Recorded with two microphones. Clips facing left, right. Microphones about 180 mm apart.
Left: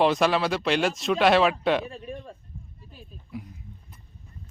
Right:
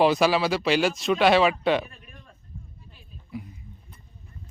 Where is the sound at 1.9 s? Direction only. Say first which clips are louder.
Left 14 dB; 30° left (ahead or behind).